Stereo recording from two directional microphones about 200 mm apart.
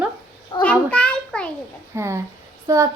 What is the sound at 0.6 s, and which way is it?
Speech, 5° left (ahead or behind).